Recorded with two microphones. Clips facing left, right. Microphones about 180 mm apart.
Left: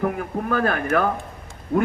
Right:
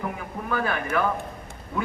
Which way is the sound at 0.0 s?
50° left (ahead or behind).